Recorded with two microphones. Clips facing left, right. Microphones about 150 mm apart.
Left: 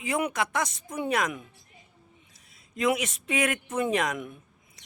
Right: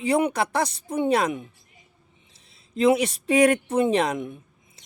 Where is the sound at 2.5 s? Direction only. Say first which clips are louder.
Right 7 dB; 30° right (ahead or behind).